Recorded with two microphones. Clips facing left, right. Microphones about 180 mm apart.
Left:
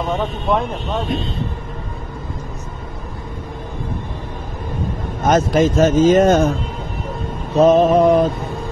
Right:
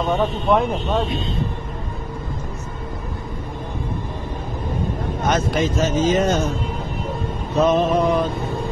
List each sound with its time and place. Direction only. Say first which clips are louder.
0.1 s speech: right 2 dB; centre (ahead or behind)
5.2 s a man's voice: left 6 dB; 45° left (ahead or behind)
7.5 s mantra: left 6 dB; 40° left (ahead or behind)